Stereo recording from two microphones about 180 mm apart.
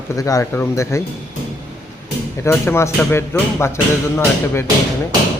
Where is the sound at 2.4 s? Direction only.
15° left (ahead or behind).